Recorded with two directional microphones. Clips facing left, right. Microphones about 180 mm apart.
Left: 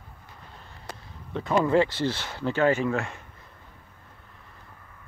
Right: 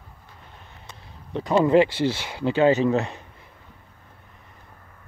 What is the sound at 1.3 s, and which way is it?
Speech, 20° right (ahead or behind).